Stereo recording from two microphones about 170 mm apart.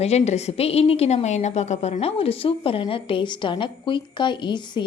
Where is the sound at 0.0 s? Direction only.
40° left (ahead or behind).